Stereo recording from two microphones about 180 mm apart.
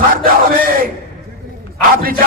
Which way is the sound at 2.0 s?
55° right (ahead or behind).